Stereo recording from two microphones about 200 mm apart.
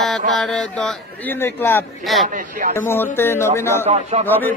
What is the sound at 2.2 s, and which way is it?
Speech, 40° right (ahead or behind).